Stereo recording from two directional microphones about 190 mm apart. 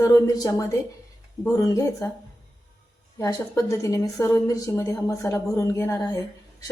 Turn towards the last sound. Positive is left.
turn(degrees=20)  # may be behind; listen again after turning